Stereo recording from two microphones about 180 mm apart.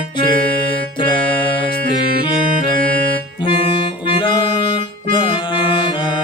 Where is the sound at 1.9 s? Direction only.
25° left (ahead or behind).